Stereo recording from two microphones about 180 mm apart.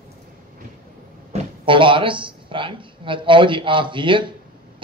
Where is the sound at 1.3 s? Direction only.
30° right (ahead or behind).